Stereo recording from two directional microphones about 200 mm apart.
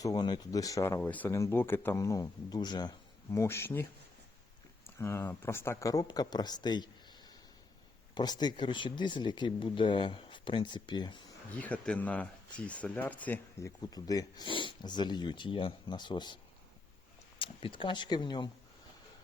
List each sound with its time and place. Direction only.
0.0 s speech: 20° left (ahead or behind)
4.9 s speech: 15° left (ahead or behind)
11.5 s speech: 5° left (ahead or behind); by 16.4 s 20° left (ahead or behind)
17.4 s speech: 25° left (ahead or behind)